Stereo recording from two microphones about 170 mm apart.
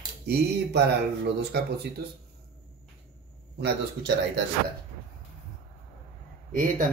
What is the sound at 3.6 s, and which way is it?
Speech, 80° right.